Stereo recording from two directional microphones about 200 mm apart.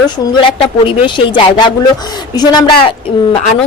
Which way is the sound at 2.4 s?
25° left (ahead or behind).